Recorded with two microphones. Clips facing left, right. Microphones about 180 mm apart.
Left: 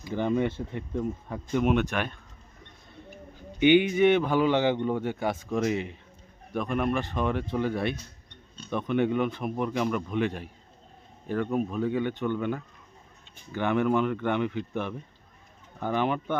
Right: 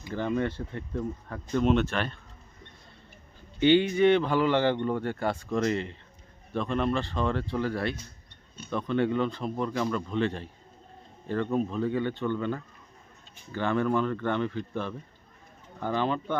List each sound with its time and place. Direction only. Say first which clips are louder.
0.1 s speech: left 2 dB; 15° left (ahead or behind)
3.6 s speech: left 1 dB; 15° left (ahead or behind)